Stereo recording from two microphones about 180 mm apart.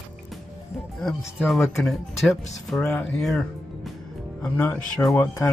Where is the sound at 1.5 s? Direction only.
Centre (ahead or behind).